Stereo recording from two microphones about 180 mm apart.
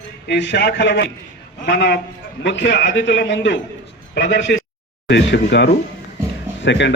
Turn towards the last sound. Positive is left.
turn(degrees=80)